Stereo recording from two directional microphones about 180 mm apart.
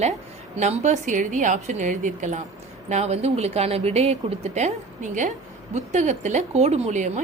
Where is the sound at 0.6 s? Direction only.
40° right (ahead or behind).